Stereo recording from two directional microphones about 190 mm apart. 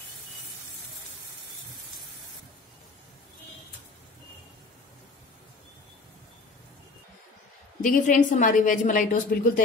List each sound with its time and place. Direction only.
7.8 s a woman's voice: 40° left (ahead or behind)